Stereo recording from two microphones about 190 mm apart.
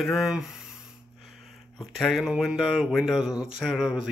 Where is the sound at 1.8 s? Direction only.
Centre (ahead or behind).